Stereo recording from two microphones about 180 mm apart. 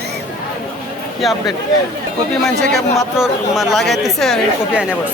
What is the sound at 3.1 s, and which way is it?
Speech, centre (ahead or behind).